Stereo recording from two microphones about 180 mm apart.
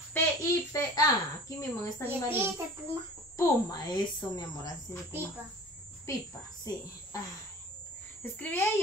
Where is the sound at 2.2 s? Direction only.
10° right (ahead or behind).